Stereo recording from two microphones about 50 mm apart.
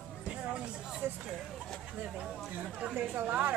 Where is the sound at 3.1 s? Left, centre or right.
Right.